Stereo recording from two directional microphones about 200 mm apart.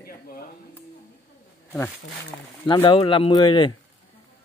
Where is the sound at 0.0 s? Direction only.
45° left (ahead or behind).